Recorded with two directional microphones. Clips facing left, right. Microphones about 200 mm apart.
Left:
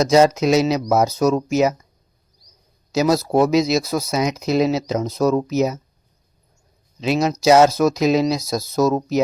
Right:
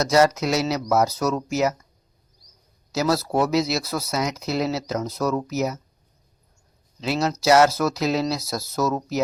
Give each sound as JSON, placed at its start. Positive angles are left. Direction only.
{"t": 0.0, "sound": "speech", "side_deg": 20}
{"t": 2.9, "sound": "speech", "side_deg": 20}
{"t": 7.0, "sound": "speech", "side_deg": 20}